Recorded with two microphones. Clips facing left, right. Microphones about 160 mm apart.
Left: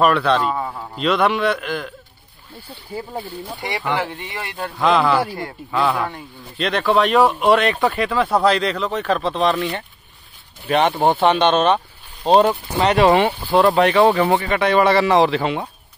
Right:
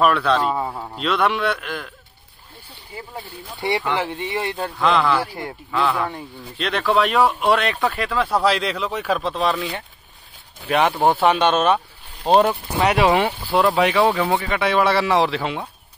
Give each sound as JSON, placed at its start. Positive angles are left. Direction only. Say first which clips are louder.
{"t": 0.0, "sound": "speech", "louder": "left 1 dB", "side_deg": 0}
{"t": 3.9, "sound": "speech", "louder": "right 1 dB", "side_deg": -20}
{"t": 4.7, "sound": "speech", "louder": "left 3 dB", "side_deg": 0}